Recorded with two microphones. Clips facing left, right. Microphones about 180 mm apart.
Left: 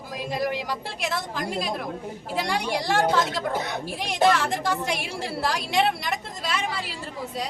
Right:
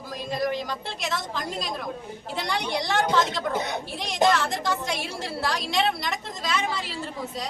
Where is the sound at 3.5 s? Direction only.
20° right (ahead or behind).